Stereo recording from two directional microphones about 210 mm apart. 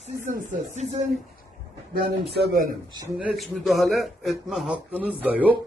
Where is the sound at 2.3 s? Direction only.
45° right (ahead or behind).